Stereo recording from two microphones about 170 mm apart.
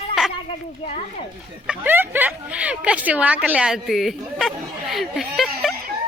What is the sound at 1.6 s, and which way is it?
Speech, 10° right (ahead or behind).